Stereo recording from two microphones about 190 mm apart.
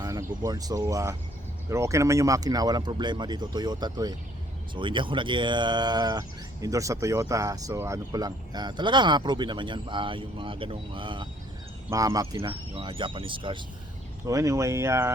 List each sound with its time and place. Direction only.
0.0 s speech: 15° right (ahead or behind)